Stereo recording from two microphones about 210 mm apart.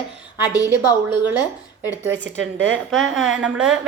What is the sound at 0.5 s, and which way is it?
Speech, 20° left (ahead or behind).